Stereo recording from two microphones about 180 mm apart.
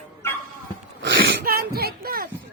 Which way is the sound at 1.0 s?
85° right.